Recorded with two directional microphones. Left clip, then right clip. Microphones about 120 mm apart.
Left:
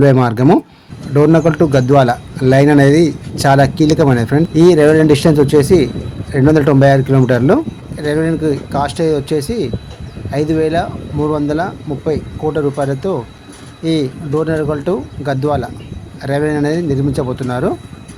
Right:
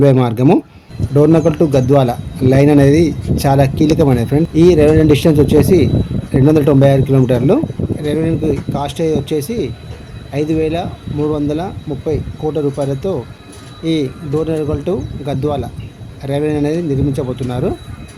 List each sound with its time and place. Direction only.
0.0 s speech: 40° left (ahead or behind)